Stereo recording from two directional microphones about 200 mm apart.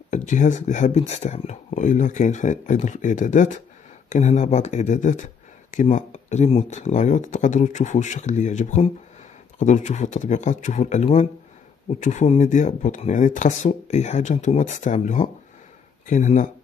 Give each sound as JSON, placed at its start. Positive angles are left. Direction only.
{"t": 0.1, "sound": "speech", "side_deg": 40}